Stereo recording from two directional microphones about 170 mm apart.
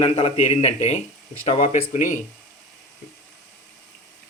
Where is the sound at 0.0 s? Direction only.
40° left (ahead or behind).